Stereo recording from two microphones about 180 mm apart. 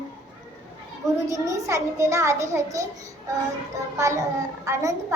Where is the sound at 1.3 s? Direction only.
15° right (ahead or behind).